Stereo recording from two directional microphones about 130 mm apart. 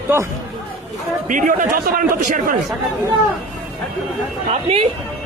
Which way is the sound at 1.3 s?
90° right.